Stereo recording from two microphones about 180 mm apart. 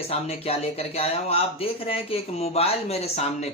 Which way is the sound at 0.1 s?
35° left (ahead or behind).